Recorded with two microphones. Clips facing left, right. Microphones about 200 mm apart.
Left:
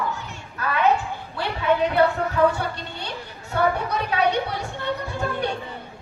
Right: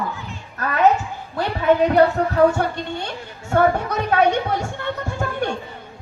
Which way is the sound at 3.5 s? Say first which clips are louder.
Right 5 dB; 50° right (ahead or behind).